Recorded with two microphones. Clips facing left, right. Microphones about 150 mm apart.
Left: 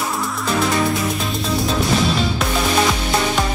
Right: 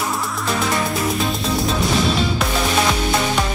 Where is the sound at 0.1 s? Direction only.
Centre (ahead or behind).